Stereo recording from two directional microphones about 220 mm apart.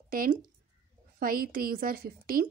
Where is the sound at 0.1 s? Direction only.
40° right (ahead or behind).